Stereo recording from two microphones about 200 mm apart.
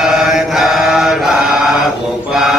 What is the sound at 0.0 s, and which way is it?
Mantra, centre (ahead or behind).